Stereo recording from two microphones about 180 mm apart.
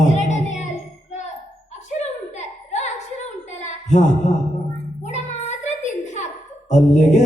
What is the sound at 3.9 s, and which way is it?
Speech, 40° left (ahead or behind).